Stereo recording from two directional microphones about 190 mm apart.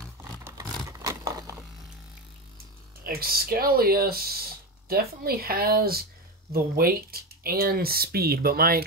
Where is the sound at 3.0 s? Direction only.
50° right (ahead or behind).